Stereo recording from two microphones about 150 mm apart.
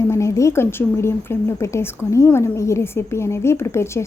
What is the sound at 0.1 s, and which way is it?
A woman's voice, 20° left (ahead or behind).